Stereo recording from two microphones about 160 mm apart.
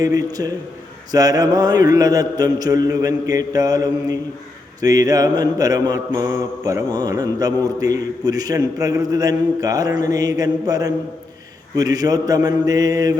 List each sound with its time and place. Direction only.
0.0 s mantra: 20° right (ahead or behind)